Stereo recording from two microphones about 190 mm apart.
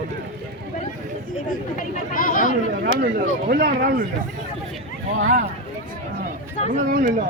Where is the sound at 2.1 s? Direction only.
45° left (ahead or behind).